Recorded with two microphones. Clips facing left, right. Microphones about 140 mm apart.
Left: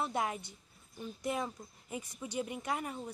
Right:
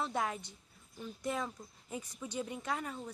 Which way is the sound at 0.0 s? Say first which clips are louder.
Left 1 dB; 10° left (ahead or behind).